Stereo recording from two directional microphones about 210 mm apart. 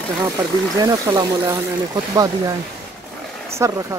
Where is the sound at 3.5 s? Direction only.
15° right (ahead or behind).